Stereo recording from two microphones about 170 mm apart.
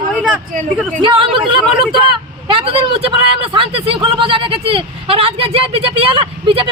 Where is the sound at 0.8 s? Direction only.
5° left (ahead or behind).